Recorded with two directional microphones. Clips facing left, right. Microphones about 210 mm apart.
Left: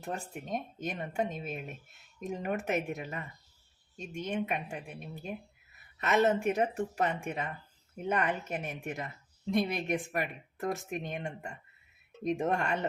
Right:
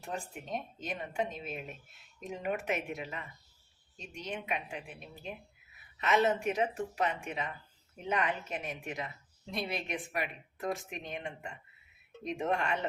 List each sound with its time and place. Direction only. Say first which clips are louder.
0.0 s a woman's voice: left 2 dB; 45° left (ahead or behind)